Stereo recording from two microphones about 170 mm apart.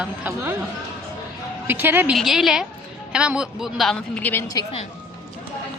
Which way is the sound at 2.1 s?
Centre (ahead or behind).